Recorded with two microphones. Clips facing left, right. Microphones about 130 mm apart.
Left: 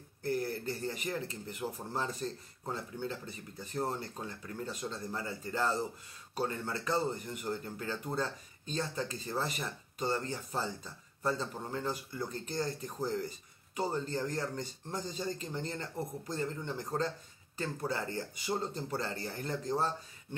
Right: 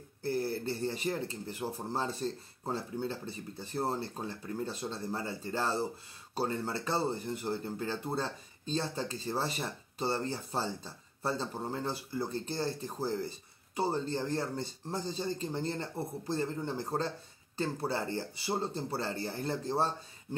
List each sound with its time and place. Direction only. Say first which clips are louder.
0.2 s speech: right 2 dB; 30° right (ahead or behind)